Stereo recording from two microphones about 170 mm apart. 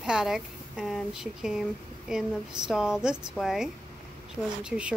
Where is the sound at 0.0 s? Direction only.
5° right (ahead or behind).